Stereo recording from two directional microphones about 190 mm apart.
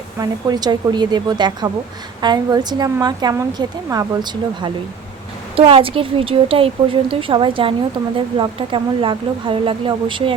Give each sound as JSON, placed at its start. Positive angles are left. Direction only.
{"t": 0.2, "sound": "a woman's voice", "side_deg": -20}